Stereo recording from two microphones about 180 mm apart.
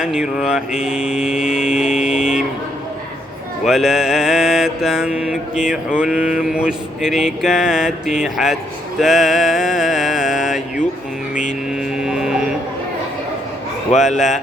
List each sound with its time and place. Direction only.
0.0 s mantra: 5° right (ahead or behind)
3.7 s mantra: centre (ahead or behind)
9.0 s a sound: centre (ahead or behind)
14.0 s mantra: centre (ahead or behind)